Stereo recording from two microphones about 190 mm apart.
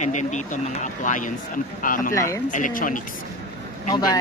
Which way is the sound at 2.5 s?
45° left (ahead or behind).